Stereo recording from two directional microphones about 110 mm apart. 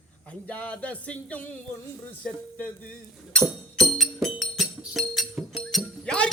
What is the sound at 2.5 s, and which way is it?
Frying, 15° left (ahead or behind).